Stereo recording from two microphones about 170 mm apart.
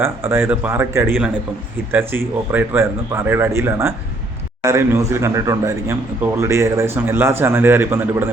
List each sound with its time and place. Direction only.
0.0 s speech: 15° right (ahead or behind)